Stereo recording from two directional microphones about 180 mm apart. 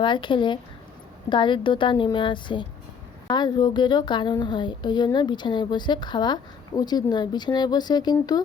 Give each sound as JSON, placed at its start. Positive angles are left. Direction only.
{"t": 0.0, "sound": "a woman's voice", "side_deg": 25}